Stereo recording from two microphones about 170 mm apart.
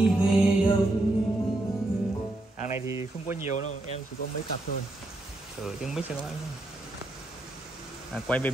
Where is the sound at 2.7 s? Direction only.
15° right (ahead or behind).